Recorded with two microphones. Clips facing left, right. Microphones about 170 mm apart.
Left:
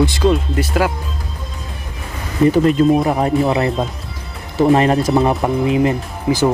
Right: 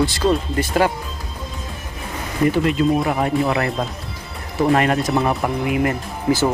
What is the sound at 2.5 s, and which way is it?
Speech, 40° left (ahead or behind).